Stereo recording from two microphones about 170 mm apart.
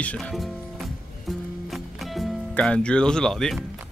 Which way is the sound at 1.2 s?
Centre (ahead or behind).